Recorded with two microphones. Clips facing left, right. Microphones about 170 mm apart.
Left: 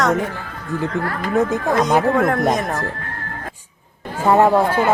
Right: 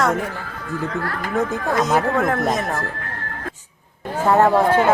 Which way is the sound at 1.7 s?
Centre (ahead or behind).